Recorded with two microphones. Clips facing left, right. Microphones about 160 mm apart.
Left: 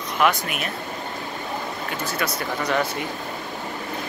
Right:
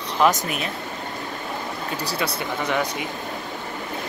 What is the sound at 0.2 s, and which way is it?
Speech, 35° right (ahead or behind).